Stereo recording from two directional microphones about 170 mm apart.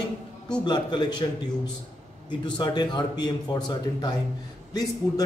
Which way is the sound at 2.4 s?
25° left (ahead or behind).